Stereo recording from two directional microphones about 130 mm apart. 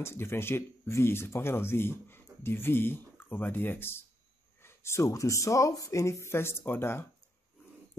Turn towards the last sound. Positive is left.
turn(degrees=15)  # may be behind; listen again after turning